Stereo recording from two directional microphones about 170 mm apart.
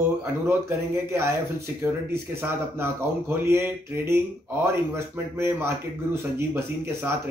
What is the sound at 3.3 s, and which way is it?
Speech, 15° right (ahead or behind).